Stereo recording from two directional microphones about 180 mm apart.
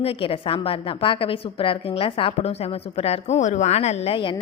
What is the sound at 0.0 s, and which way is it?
A woman's voice, 30° left (ahead or behind).